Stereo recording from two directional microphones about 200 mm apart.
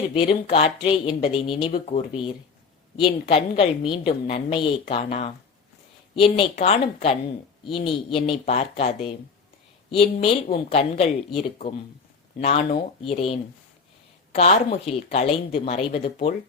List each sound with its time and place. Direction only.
0.1 s a woman's voice: 30° left (ahead or behind)
14.3 s a woman's voice: 30° left (ahead or behind)